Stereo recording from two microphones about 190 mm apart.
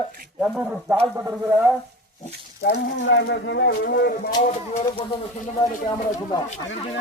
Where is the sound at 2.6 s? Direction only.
60° left (ahead or behind).